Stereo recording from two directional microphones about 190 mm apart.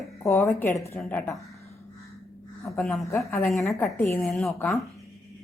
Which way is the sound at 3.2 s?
15° left (ahead or behind).